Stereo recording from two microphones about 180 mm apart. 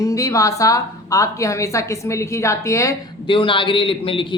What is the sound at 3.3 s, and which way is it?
A woman's voice, 30° left (ahead or behind).